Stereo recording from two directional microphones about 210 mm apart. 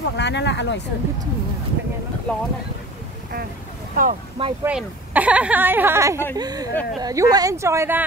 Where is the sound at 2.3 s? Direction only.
5° left (ahead or behind).